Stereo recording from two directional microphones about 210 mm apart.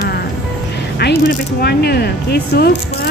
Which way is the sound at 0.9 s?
45° left (ahead or behind).